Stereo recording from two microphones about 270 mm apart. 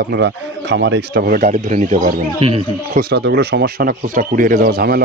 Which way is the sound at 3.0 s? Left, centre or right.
Right.